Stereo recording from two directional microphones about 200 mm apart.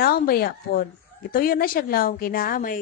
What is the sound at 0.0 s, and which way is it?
A woman's voice, 45° left (ahead or behind).